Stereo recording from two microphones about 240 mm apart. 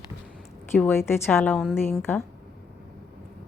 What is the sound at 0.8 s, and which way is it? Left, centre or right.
A woman's voice, centre.